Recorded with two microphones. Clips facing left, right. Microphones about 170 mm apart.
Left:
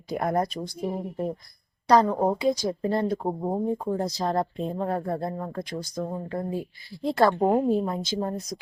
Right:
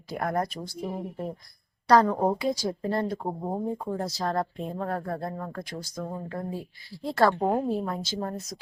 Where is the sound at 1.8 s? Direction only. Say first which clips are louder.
Left 1 dB; 20° left (ahead or behind).